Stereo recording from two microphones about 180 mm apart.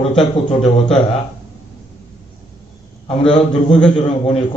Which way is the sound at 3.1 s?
30° left (ahead or behind).